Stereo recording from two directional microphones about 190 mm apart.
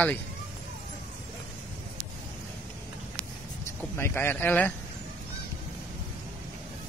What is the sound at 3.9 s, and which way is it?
Speech, 10° left (ahead or behind).